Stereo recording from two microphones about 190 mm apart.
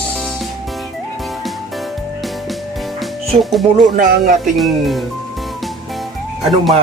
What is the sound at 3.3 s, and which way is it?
Speech, centre (ahead or behind).